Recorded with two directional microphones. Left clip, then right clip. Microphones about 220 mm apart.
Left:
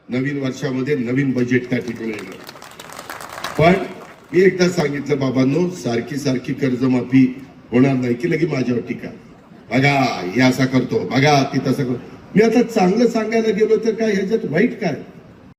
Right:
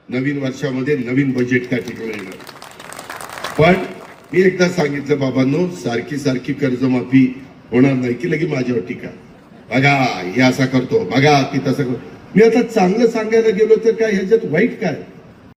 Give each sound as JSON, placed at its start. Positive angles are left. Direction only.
{"t": 0.1, "sound": "a man's voice", "side_deg": 25}
{"t": 4.5, "sound": "a man's voice", "side_deg": 25}